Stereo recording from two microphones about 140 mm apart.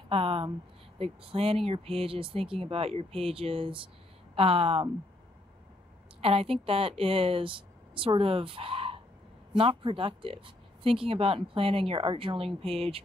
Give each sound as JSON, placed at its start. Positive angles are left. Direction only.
{"t": 0.1, "sound": "speech", "side_deg": -45}
{"t": 6.2, "sound": "a woman's voice", "side_deg": -45}